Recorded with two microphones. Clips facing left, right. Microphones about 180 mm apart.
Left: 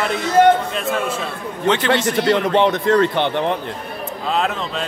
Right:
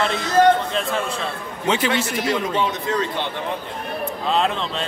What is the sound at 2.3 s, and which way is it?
Speech, 65° left (ahead or behind).